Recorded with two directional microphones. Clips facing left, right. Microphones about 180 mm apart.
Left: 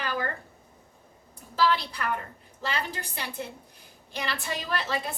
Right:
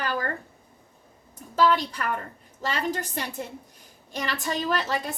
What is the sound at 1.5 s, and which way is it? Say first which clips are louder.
A woman's voice: right 4 dB; 45° right (ahead or behind).